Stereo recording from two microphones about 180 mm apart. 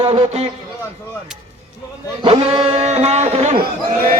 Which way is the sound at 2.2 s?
35° right (ahead or behind).